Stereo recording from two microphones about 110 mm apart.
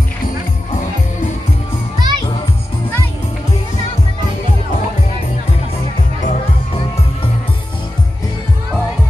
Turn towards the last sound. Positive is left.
turn(degrees=65)  # may be behind; listen again after turning